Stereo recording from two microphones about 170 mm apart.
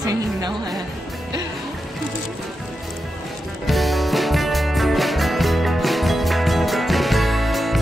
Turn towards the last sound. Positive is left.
turn(degrees=0)  # may be behind; listen again after turning